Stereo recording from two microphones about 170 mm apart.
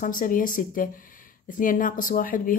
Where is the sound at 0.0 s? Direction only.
50° left (ahead or behind).